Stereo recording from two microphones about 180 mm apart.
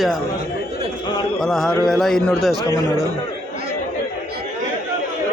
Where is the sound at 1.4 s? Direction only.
Centre (ahead or behind).